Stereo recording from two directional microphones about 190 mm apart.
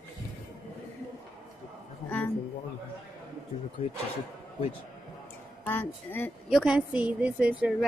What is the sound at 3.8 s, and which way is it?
Speech, 30° left (ahead or behind).